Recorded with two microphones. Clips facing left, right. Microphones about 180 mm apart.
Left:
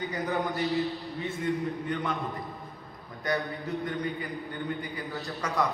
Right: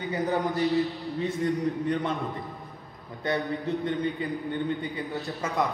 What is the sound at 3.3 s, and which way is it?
A man's voice, 25° right (ahead or behind).